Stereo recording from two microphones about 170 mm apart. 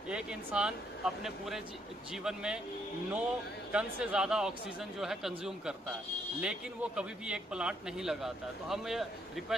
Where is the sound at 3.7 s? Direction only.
5° right (ahead or behind).